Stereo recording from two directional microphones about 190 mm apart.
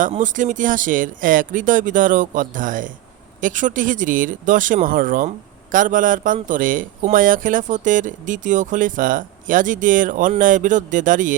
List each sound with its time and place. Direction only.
0.0 s speech: 40° right (ahead or behind)